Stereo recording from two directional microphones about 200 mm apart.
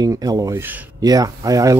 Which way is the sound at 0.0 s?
20° right (ahead or behind).